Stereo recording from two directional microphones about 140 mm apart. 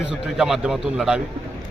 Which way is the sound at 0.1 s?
5° right (ahead or behind).